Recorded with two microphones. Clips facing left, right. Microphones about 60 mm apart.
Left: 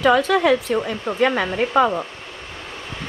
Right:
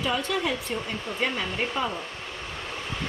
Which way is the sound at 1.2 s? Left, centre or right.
Left.